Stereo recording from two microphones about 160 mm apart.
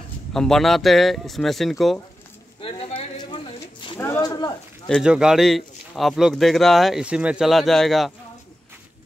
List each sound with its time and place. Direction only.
0.3 s speech: 5° left (ahead or behind)
2.6 s a sound: 35° left (ahead or behind)
4.0 s speech: 15° left (ahead or behind)
5.0 s speech: 5° right (ahead or behind)